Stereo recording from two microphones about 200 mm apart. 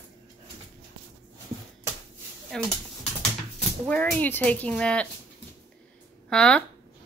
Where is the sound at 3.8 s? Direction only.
5° left (ahead or behind).